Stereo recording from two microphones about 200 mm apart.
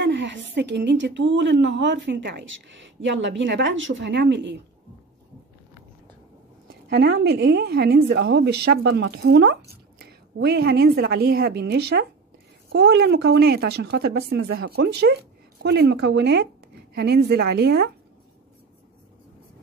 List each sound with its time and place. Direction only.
0.0 s a woman's voice: 60° right (ahead or behind)
6.9 s a woman's voice: 55° right (ahead or behind)